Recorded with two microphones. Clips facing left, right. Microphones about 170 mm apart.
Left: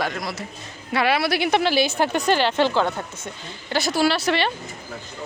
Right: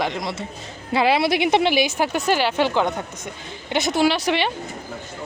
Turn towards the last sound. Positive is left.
turn(degrees=-15)  # may be behind; listen again after turning